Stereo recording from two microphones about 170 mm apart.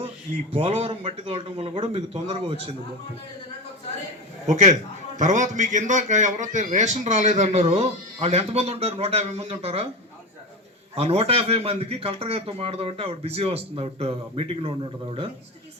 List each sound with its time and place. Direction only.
0.5 s a man's voice: 35° right (ahead or behind)
4.4 s a man's voice: 45° right (ahead or behind)
10.9 s a man's voice: 35° right (ahead or behind)